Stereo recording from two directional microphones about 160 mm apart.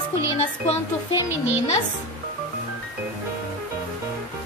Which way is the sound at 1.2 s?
10° right (ahead or behind).